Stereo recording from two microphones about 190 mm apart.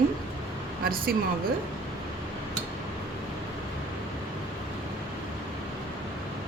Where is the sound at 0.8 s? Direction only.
50° right (ahead or behind).